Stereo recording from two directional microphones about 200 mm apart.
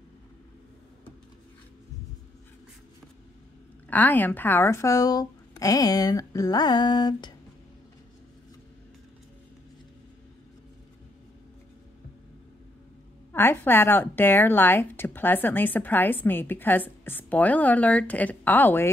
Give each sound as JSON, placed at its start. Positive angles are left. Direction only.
{"t": 3.9, "sound": "speech", "side_deg": 10}
{"t": 13.3, "sound": "speech", "side_deg": 10}